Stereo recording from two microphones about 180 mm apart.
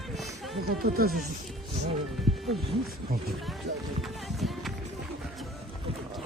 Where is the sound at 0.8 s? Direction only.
55° right (ahead or behind).